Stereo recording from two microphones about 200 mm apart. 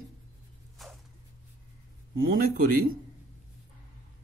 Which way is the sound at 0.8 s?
Centre (ahead or behind).